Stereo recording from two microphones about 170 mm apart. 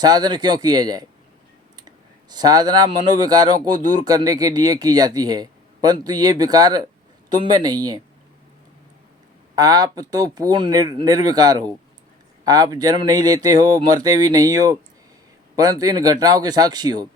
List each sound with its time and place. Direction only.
0.0 s speech: 25° right (ahead or behind)
2.3 s speech: 25° right (ahead or behind)
9.6 s speech: 20° right (ahead or behind)